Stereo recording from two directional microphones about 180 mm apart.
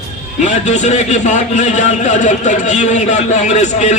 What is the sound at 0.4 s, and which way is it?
A man's voice, 40° left (ahead or behind).